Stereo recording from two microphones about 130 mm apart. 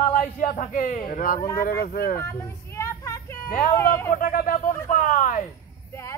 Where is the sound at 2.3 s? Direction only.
20° left (ahead or behind).